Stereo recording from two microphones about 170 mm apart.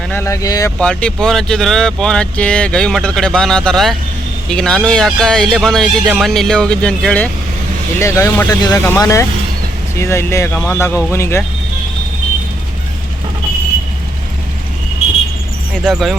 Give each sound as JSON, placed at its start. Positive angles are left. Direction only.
{"t": 0.1, "sound": "speech", "side_deg": 15}
{"t": 0.8, "sound": "speech", "side_deg": 5}
{"t": 15.7, "sound": "speech", "side_deg": 0}